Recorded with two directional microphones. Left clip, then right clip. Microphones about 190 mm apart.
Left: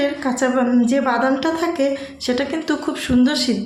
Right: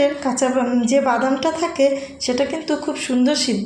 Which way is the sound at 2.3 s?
Centre (ahead or behind).